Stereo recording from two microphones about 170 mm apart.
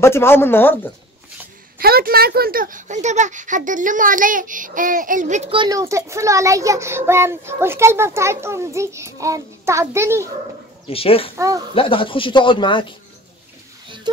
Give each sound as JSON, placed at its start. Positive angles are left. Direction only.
{"t": 0.0, "sound": "speech", "side_deg": 15}
{"t": 1.8, "sound": "speech", "side_deg": -60}
{"t": 5.5, "sound": "a child's voice", "side_deg": -25}
{"t": 10.9, "sound": "speech", "side_deg": 35}
{"t": 11.3, "sound": "speech", "side_deg": -20}
{"t": 11.7, "sound": "speech", "side_deg": 30}
{"t": 13.8, "sound": "pig", "side_deg": -30}